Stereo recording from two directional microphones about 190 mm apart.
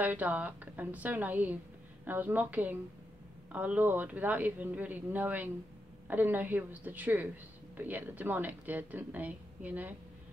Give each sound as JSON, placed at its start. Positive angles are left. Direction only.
{"t": 0.0, "sound": "speech", "side_deg": -10}